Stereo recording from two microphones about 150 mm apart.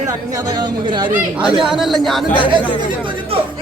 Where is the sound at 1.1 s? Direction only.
10° right (ahead or behind).